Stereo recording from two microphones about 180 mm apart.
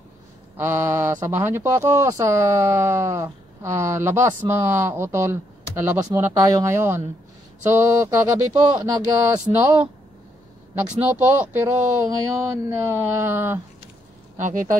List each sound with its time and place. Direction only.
0.6 s speech: 15° right (ahead or behind)
14.3 s speech: 45° right (ahead or behind)